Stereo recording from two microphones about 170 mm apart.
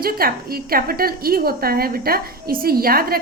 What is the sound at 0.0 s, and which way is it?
A woman's voice, 60° right (ahead or behind).